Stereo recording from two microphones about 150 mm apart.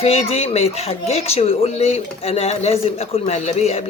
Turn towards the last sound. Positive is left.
turn(degrees=45)  # may be behind; listen again after turning